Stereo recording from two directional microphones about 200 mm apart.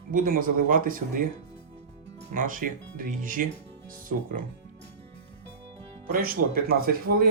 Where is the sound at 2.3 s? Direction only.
40° right (ahead or behind).